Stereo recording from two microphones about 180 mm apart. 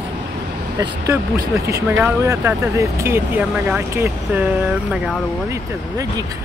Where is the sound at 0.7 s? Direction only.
20° right (ahead or behind); by 5.2 s 5° right (ahead or behind).